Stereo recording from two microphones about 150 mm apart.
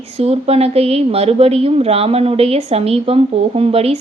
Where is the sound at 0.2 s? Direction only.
40° right (ahead or behind).